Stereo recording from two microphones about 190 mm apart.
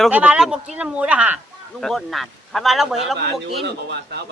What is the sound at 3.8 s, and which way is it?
Speech, 65° right (ahead or behind).